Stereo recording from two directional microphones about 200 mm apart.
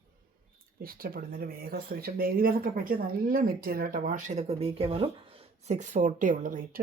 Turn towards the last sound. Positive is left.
turn(degrees=-45)  # may be behind; listen again after turning